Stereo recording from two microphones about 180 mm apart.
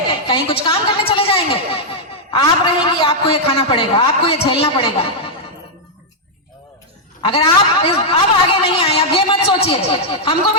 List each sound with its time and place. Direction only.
0.3 s a woman's voice: 30° left (ahead or behind)
7.2 s a man's voice: 30° left (ahead or behind)